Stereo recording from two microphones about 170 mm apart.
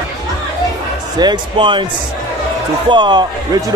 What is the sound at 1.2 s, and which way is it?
Speech, 25° right (ahead or behind).